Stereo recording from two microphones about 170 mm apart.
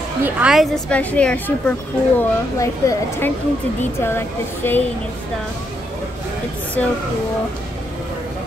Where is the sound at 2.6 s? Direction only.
20° left (ahead or behind).